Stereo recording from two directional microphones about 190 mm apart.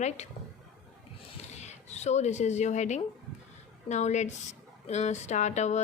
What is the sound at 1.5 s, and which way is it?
Speech, 35° left (ahead or behind).